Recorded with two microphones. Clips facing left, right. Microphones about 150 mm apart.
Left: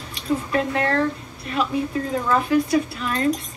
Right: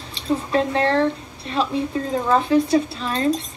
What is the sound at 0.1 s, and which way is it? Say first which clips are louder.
Speech: right 2 dB; 30° right (ahead or behind).